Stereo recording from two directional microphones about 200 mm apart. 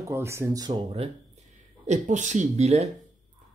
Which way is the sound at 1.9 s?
35° right (ahead or behind).